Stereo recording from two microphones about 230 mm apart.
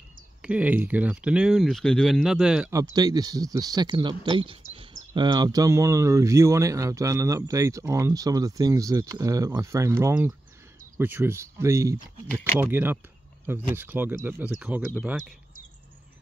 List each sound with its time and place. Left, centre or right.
0.4 s speech: centre
2.7 s speech: centre